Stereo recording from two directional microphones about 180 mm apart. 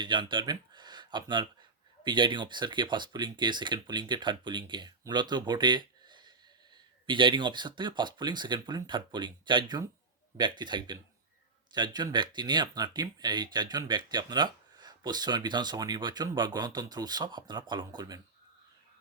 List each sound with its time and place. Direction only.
0.0 s speech: 25° right (ahead or behind)